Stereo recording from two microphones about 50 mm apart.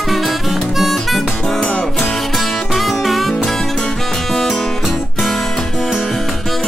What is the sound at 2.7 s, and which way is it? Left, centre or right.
Music, centre.